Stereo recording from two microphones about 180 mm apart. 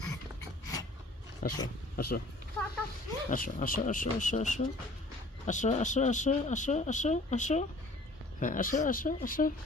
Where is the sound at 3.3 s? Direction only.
45° left (ahead or behind).